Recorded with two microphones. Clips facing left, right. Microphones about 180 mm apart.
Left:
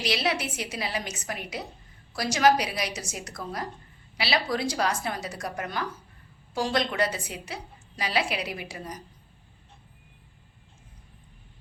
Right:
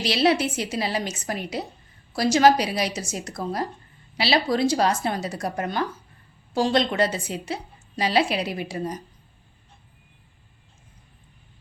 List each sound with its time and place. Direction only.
0.0 s a woman's voice: 30° right (ahead or behind)